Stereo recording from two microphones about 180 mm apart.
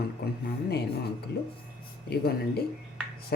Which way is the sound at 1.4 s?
65° left (ahead or behind).